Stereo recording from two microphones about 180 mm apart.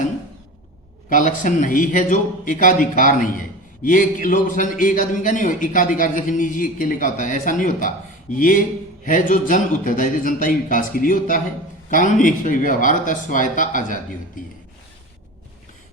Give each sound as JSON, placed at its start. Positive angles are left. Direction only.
{"t": 1.1, "sound": "a man's voice", "side_deg": 45}